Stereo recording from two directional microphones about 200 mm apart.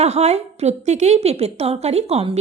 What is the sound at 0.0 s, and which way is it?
A woman's voice, 35° right (ahead or behind).